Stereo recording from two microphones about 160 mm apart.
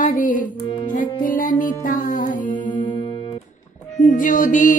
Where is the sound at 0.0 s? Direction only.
60° left (ahead or behind).